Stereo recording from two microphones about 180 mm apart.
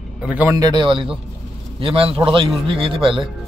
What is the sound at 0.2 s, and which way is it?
Speech, 10° right (ahead or behind).